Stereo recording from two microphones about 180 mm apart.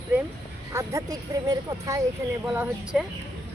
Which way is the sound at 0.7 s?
20° right (ahead or behind).